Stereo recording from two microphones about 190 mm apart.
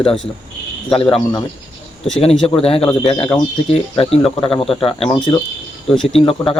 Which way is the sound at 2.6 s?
30° left (ahead or behind).